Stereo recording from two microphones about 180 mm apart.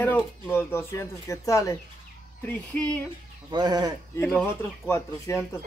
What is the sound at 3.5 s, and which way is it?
Speech, 20° right (ahead or behind).